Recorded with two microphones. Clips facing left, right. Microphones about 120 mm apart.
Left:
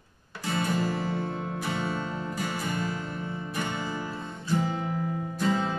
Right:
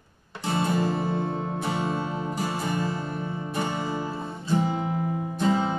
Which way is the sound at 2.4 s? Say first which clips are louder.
Right 3 dB; 30° right (ahead or behind).